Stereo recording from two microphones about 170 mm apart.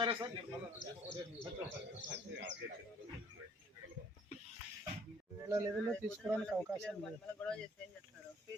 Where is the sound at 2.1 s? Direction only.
90° right.